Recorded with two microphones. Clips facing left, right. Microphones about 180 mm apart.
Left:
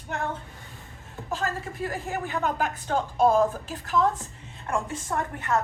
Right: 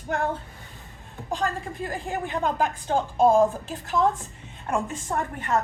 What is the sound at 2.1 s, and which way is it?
A woman's voice, 30° right (ahead or behind).